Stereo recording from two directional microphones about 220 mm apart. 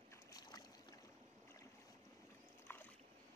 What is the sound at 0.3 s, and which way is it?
Boat, 20° left (ahead or behind).